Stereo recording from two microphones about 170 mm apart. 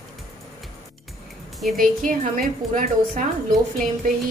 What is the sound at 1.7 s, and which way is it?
A woman's voice, 50° right (ahead or behind).